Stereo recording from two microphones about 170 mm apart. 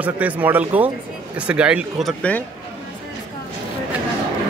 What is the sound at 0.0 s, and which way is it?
Speech, 10° right (ahead or behind).